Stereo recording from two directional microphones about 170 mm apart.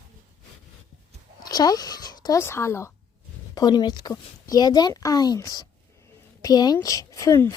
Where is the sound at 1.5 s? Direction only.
20° left (ahead or behind).